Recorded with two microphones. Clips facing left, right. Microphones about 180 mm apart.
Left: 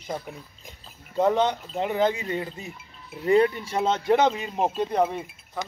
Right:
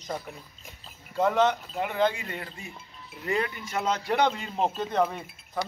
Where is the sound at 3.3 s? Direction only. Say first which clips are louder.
Left 9 dB; 30° left (ahead or behind); by 5.1 s 15° left (ahead or behind).